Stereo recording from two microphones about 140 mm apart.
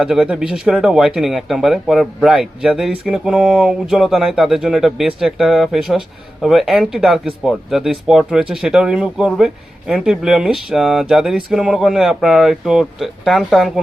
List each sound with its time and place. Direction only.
0.0 s speech: 5° right (ahead or behind)